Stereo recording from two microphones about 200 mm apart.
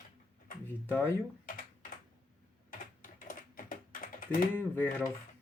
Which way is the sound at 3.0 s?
40° left (ahead or behind).